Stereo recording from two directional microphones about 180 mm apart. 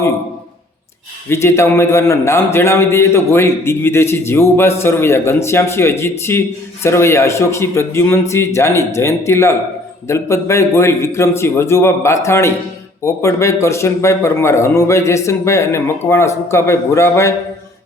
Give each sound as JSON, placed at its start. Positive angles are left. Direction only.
{"t": 1.3, "sound": "a man's voice", "side_deg": 15}